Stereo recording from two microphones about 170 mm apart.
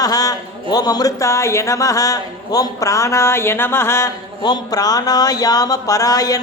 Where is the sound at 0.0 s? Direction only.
20° left (ahead or behind).